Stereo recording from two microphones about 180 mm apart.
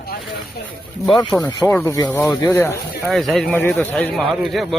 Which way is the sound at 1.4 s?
20° left (ahead or behind).